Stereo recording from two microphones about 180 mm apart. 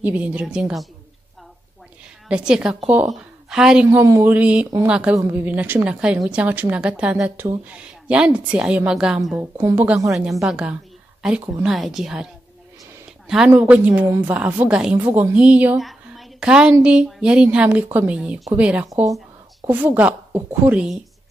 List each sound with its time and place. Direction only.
0.0 s speech: 10° right (ahead or behind)
2.2 s a woman's voice: 5° right (ahead or behind)
10.1 s a woman's voice: centre (ahead or behind)
13.5 s a woman's voice: 10° right (ahead or behind)